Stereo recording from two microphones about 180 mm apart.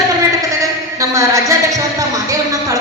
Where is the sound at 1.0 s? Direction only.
15° right (ahead or behind).